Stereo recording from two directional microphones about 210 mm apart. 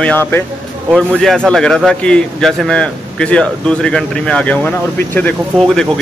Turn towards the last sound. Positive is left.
turn(degrees=5)  # may be behind; listen again after turning